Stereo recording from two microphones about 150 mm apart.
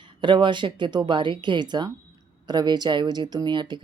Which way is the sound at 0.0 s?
30° right (ahead or behind).